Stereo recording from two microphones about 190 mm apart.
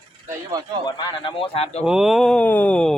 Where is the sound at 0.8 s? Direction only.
25° left (ahead or behind).